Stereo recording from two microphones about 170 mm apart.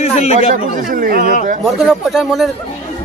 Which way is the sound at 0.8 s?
55° right (ahead or behind).